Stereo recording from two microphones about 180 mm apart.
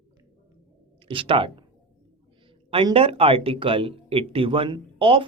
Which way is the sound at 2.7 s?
30° right (ahead or behind).